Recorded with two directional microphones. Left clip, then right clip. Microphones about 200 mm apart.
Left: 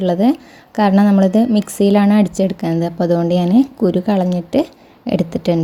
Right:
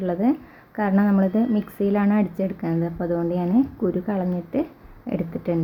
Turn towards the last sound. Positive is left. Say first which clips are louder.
# left 9 dB
turn(degrees=45)  # may be behind; listen again after turning